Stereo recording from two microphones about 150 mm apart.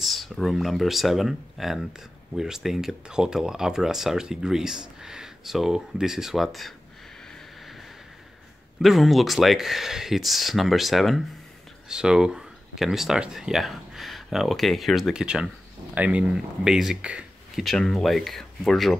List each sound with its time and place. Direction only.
0.0 s speech: centre (ahead or behind)
8.8 s speech: centre (ahead or behind)